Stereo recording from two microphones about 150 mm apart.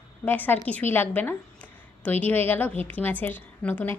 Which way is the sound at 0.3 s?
10° left (ahead or behind).